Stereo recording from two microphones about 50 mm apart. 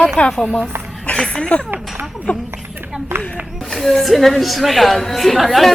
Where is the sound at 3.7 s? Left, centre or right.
Centre.